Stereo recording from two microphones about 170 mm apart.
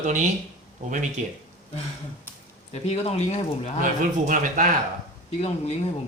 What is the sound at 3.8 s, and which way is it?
Speech, 50° right (ahead or behind).